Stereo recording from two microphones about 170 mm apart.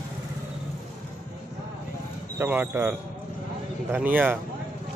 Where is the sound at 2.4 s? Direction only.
10° right (ahead or behind).